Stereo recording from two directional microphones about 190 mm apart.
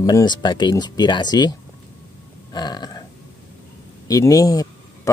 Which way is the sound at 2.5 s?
20° left (ahead or behind).